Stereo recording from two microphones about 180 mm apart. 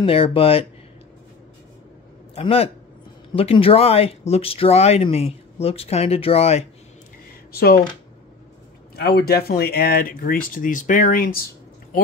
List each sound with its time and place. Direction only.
0.0 s speech: 30° left (ahead or behind)
2.3 s speech: 35° left (ahead or behind)
7.5 s speech: 60° left (ahead or behind)
8.9 s speech: 60° left (ahead or behind)